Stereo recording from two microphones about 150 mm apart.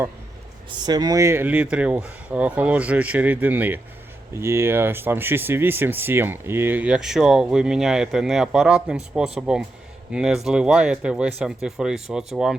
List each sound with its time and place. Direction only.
0.8 s speech: 25° right (ahead or behind); by 12.5 s 5° right (ahead or behind)